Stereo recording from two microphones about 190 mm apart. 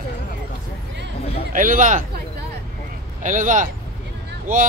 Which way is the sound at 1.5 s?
45° right (ahead or behind).